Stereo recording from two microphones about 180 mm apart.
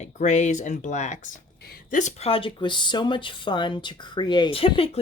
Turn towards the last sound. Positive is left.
turn(degrees=30)  # may be behind; listen again after turning